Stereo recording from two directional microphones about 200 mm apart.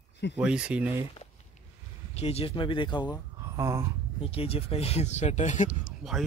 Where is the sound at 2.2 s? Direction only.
30° left (ahead or behind).